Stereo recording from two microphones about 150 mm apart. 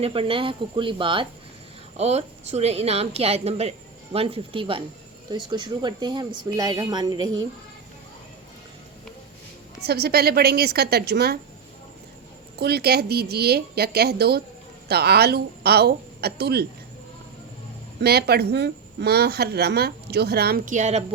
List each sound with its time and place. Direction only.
0.0 s speech: 40° right (ahead or behind)
2.0 s a woman's voice: 45° right (ahead or behind); by 7.4 s 25° right (ahead or behind)
9.8 s a woman's voice: 90° right
12.5 s a woman's voice: 90° right
18.0 s a woman's voice: 90° right
20.7 s a woman's voice: 50° right (ahead or behind)